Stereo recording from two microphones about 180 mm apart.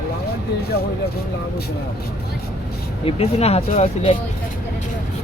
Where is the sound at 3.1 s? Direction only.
35° left (ahead or behind).